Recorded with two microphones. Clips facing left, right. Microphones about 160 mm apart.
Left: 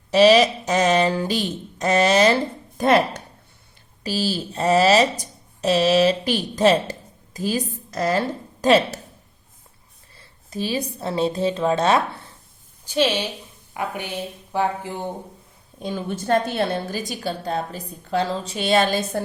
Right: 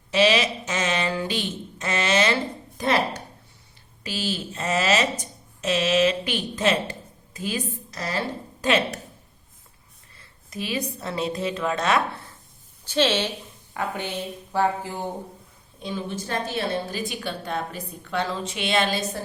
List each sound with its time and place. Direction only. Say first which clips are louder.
0.1 s a woman's voice: left 7 dB; 40° left (ahead or behind)
4.0 s a woman's voice: left 5 dB; 35° left (ahead or behind)
8.6 s a woman's voice: left 6 dB; 35° left (ahead or behind)
10.2 s a sound: left 5 dB; 30° left (ahead or behind)
11.0 s a woman's voice: left 8 dB; 30° left (ahead or behind)
12.8 s a woman's voice: left 1 dB; 10° left (ahead or behind)
15.8 s a woman's voice: left 3 dB; 50° left (ahead or behind)